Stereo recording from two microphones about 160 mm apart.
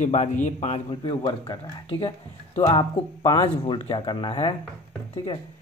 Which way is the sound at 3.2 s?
25° left (ahead or behind).